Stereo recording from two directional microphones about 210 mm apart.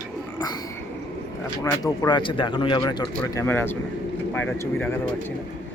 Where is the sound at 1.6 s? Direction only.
15° left (ahead or behind).